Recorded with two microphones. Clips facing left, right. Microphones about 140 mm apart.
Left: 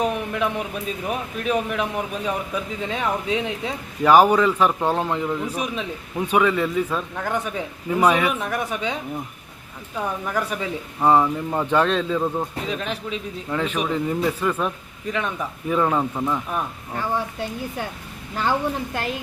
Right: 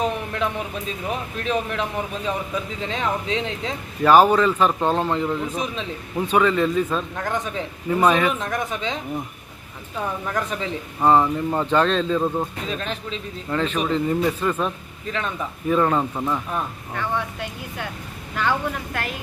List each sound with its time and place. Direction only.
0.0 s a man's voice: 10° left (ahead or behind)
10.0 s a man's voice: 5° left (ahead or behind)
16.1 s speech: 5° right (ahead or behind)
16.5 s a man's voice: 10° left (ahead or behind)
17.2 s a woman's voice: 35° left (ahead or behind)